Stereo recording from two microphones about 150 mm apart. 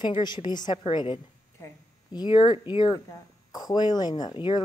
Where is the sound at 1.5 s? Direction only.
20° left (ahead or behind).